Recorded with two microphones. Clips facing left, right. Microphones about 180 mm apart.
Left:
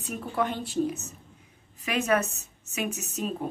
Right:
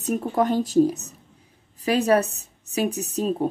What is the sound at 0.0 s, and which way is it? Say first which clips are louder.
A woman's voice: right 7 dB; 40° right (ahead or behind).